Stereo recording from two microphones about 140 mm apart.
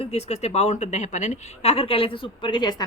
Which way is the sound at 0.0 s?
50° left (ahead or behind).